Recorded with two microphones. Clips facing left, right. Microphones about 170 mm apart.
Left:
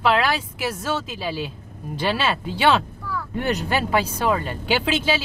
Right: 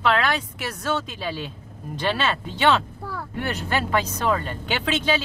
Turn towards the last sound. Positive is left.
turn(degrees=10)  # may be behind; listen again after turning